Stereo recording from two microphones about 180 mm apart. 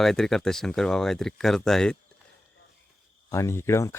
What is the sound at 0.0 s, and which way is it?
Speech, centre (ahead or behind).